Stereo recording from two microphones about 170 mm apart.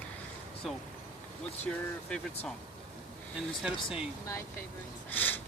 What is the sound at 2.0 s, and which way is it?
Speech, 5° left (ahead or behind).